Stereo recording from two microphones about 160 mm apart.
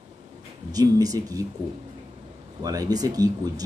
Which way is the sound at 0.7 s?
25° right (ahead or behind).